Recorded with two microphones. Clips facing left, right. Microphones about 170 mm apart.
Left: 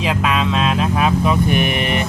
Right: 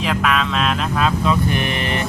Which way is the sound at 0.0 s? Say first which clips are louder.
Left 1 dB; 15° left (ahead or behind).